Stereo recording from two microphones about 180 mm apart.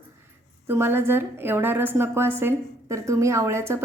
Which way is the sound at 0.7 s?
15° right (ahead or behind).